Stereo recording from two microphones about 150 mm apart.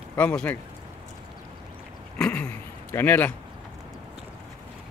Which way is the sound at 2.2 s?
10° left (ahead or behind).